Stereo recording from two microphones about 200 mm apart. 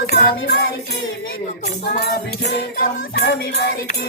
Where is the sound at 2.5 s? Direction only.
55° left (ahead or behind).